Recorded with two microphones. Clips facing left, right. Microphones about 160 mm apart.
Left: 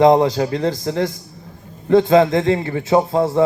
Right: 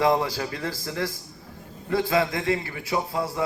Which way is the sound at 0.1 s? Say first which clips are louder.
Left 10 dB; 45° left (ahead or behind).